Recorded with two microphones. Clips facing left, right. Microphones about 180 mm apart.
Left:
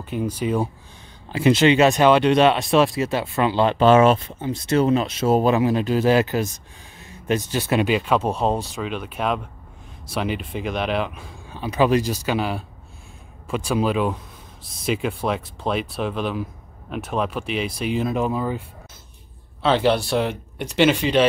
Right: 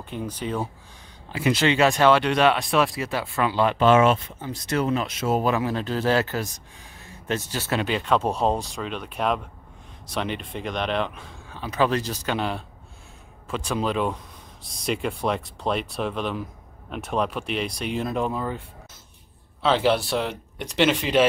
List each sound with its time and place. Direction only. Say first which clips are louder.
0.0 s speech: left 6 dB; 10° left (ahead or behind)
1.3 s speech: left 6 dB; 25° left (ahead or behind)
4.4 s speech: left 6 dB; 25° left (ahead or behind); by 18.6 s 5° left (ahead or behind)
19.6 s speech: left 2 dB; centre (ahead or behind)